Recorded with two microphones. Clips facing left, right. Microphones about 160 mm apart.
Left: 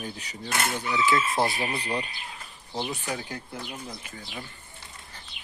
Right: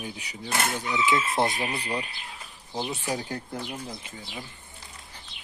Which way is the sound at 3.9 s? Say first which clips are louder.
Right 1 dB; 25° right (ahead or behind).